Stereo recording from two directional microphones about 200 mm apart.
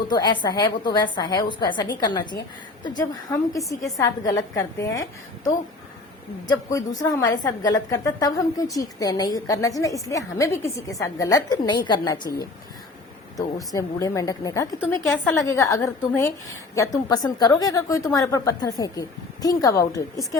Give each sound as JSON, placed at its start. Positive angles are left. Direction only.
{"t": 0.1, "sound": "a woman's voice", "side_deg": 20}
{"t": 6.5, "sound": "a woman's voice", "side_deg": 20}
{"t": 13.7, "sound": "a woman's voice", "side_deg": 15}